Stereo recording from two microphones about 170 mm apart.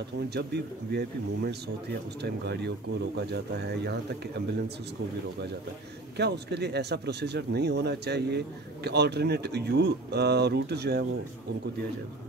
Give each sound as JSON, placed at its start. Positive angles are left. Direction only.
{"t": 0.3, "sound": "speech", "side_deg": -75}
{"t": 6.1, "sound": "speech", "side_deg": -80}